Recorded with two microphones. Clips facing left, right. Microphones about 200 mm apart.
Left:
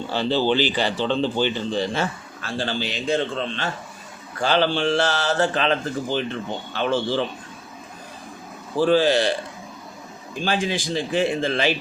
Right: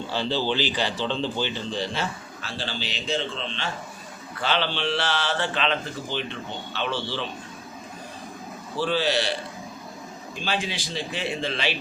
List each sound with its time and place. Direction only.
0.1 s speech: 55° left (ahead or behind)
8.8 s speech: 45° left (ahead or behind)
10.4 s speech: 45° left (ahead or behind)